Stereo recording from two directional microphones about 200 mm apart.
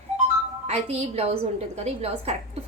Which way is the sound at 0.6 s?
35° right (ahead or behind).